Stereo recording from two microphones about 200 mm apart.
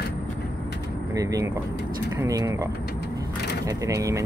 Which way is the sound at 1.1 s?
15° right (ahead or behind).